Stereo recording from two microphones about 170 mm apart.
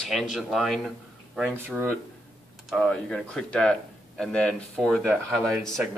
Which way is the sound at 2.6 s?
5° left (ahead or behind).